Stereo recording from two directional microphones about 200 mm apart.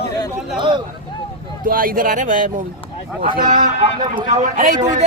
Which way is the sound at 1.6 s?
45° right (ahead or behind).